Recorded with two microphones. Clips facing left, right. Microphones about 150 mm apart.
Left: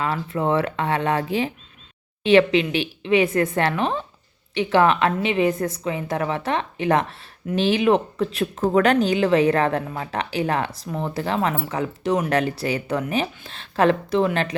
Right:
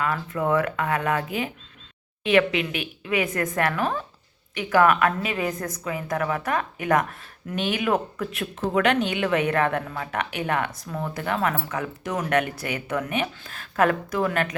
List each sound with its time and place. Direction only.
0.0 s a woman's voice: 25° left (ahead or behind)
8.5 s a woman's voice: 40° left (ahead or behind)